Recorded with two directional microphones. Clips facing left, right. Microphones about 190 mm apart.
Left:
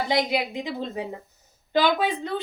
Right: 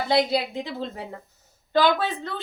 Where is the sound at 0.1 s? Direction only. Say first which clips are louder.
Right 5 dB; 15° left (ahead or behind).